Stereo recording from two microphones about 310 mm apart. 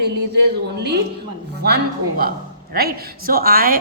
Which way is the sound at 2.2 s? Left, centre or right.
Right.